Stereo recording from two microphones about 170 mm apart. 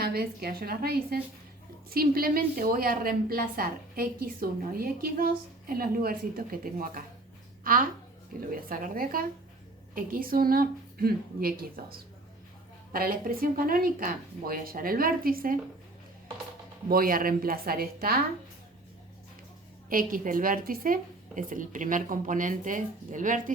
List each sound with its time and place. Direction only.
0.0 s a woman's voice: 65° right (ahead or behind)
16.9 s a woman's voice: 55° right (ahead or behind)
19.9 s a woman's voice: 55° right (ahead or behind)